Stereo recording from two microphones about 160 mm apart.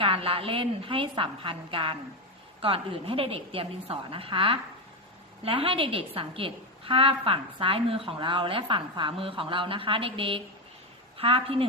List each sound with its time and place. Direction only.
0.0 s a woman's voice: 35° right (ahead or behind)